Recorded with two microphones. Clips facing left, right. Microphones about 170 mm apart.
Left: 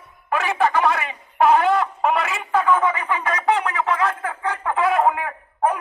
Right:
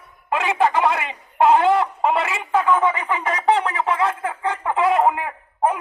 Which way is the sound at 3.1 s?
25° right (ahead or behind).